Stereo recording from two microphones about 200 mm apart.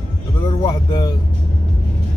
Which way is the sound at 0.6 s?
20° left (ahead or behind).